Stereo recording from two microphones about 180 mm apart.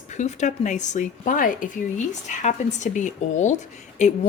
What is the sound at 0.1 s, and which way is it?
A woman's voice, 40° left (ahead or behind).